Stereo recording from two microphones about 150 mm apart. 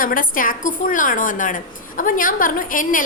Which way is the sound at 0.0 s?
65° left (ahead or behind).